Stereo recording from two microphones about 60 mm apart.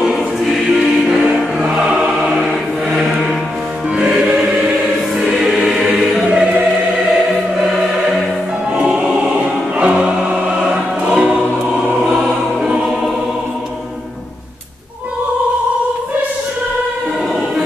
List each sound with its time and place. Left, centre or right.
0.0 s choir: centre
1.6 s choir: centre
3.9 s music: centre
5.2 s music: centre
7.5 s choir: centre
8.7 s music: centre
11.9 s choir: centre